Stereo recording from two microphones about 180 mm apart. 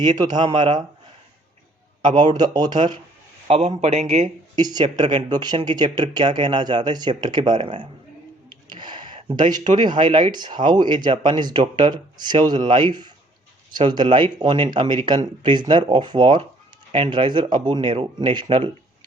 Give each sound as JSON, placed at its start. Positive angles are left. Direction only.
{"t": 0.2, "sound": "speech", "side_deg": -25}
{"t": 2.0, "sound": "speech", "side_deg": -25}
{"t": 3.4, "sound": "a man's voice", "side_deg": -35}
{"t": 4.6, "sound": "speech", "side_deg": -25}